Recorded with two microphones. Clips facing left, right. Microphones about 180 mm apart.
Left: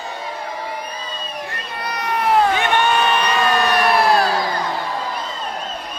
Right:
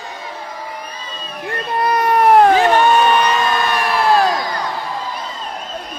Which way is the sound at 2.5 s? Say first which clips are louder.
Right 6 dB; 35° right (ahead or behind).